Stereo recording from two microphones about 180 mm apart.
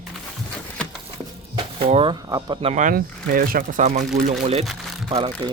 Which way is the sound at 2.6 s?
45° right (ahead or behind).